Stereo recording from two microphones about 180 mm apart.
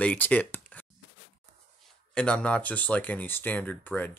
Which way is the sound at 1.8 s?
5° left (ahead or behind).